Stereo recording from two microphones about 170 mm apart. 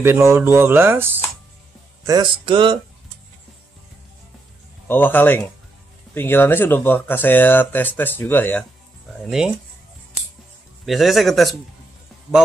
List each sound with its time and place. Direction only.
0.0 s speech: 15° right (ahead or behind)
2.0 s a sound: 25° right (ahead or behind)
4.8 s speech: 10° left (ahead or behind)
10.9 s speech: centre (ahead or behind)